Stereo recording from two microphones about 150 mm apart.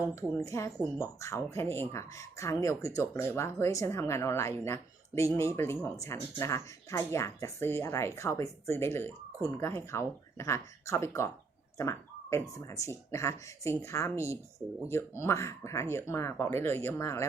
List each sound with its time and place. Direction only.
0.2 s speech: 20° left (ahead or behind)
14.6 s speech: 5° right (ahead or behind)
15.2 s speech: 20° left (ahead or behind)